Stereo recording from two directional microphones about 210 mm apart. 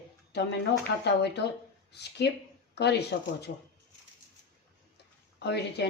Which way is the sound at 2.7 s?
50° left (ahead or behind).